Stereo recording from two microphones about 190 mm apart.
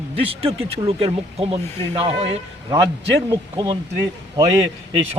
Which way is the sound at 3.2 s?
25° right (ahead or behind).